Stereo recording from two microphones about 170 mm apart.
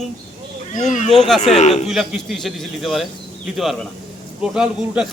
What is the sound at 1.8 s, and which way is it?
A man's voice, 5° right (ahead or behind).